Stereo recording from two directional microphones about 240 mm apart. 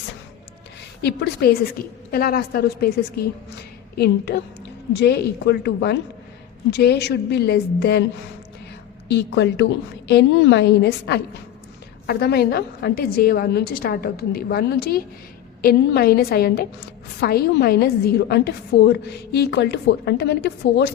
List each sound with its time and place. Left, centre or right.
1.0 s a woman's voice: left
9.0 s a woman's voice: left